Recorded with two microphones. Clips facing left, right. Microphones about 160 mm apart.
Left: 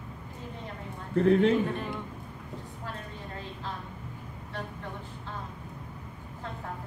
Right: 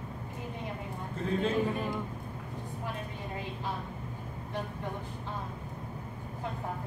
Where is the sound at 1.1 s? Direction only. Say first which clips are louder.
Left 9 dB; 65° left (ahead or behind).